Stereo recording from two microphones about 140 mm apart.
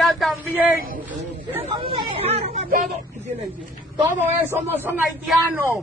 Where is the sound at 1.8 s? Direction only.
40° right (ahead or behind).